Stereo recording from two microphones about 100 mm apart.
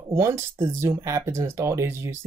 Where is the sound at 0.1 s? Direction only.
30° right (ahead or behind).